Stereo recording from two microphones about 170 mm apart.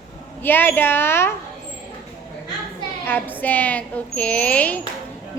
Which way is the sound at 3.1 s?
10° left (ahead or behind).